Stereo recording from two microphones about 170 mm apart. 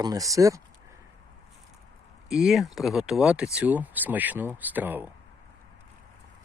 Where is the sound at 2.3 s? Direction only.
5° right (ahead or behind).